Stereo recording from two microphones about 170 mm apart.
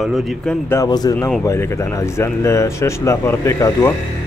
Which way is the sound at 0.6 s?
20° left (ahead or behind).